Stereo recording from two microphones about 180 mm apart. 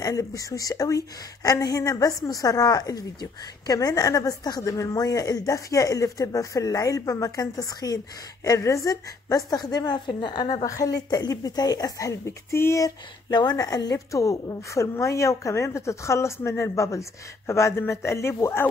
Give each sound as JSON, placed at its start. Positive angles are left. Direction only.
{"t": 0.0, "sound": "a woman's voice", "side_deg": 20}